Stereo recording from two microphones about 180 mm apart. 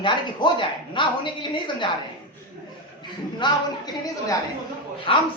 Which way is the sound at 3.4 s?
20° left (ahead or behind).